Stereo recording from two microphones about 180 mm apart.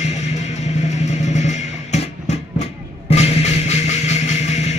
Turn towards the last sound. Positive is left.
turn(degrees=40)  # may be behind; listen again after turning